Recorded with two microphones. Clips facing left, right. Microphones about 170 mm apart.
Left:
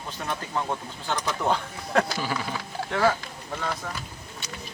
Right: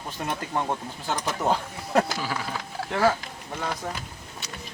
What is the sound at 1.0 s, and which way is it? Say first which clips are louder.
Speech: even; 5° right (ahead or behind).